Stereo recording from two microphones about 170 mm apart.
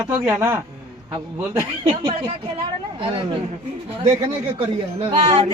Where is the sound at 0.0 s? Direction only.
15° right (ahead or behind).